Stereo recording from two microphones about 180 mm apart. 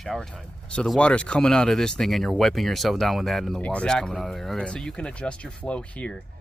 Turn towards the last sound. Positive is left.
turn(degrees=5)  # may be behind; listen again after turning